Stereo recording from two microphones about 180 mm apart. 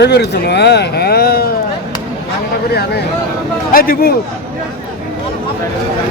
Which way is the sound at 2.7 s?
65° left (ahead or behind).